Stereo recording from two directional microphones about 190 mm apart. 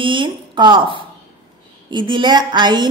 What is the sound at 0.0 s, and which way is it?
A woman's voice, 25° right (ahead or behind).